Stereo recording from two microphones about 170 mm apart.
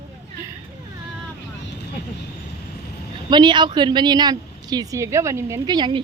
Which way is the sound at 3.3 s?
25° right (ahead or behind).